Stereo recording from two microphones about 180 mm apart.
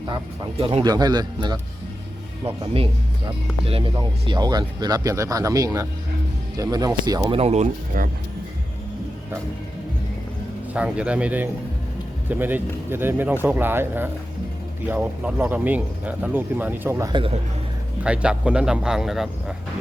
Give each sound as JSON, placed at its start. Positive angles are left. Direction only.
{"t": 0.6, "sound": "speech", "side_deg": -25}
{"t": 2.7, "sound": "speech", "side_deg": -30}
{"t": 7.3, "sound": "speech", "side_deg": -35}
{"t": 10.8, "sound": "speech", "side_deg": -5}
{"t": 18.0, "sound": "speech", "side_deg": -5}